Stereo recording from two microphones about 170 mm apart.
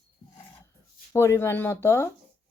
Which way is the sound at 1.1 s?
15° left (ahead or behind).